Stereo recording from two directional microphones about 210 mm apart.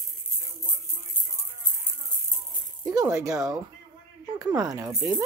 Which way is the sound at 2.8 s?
15° right (ahead or behind).